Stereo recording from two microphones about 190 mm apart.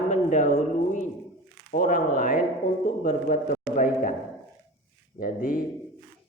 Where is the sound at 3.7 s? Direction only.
45° left (ahead or behind).